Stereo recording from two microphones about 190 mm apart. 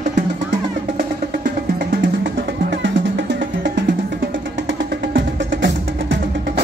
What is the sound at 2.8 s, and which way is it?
Music, 70° right (ahead or behind).